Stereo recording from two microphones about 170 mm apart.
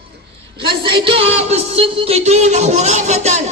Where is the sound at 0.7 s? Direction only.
30° right (ahead or behind).